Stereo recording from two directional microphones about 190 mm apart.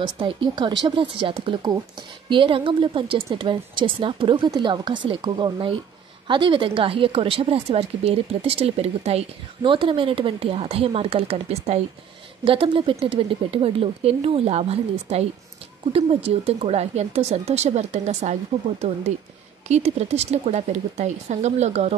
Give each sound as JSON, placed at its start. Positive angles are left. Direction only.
{"t": 0.0, "sound": "speech", "side_deg": -25}